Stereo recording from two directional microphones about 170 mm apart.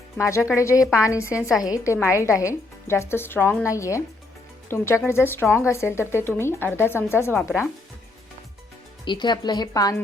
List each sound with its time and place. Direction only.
0.2 s speech: 15° left (ahead or behind)
1.3 s a woman's voice: 5° right (ahead or behind)
1.6 s speech: 20° left (ahead or behind)
5.0 s speech: 15° left (ahead or behind)
9.0 s a woman's voice: 25° left (ahead or behind)